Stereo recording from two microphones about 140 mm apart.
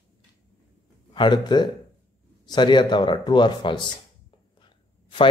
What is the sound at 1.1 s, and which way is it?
Speech, 35° left (ahead or behind).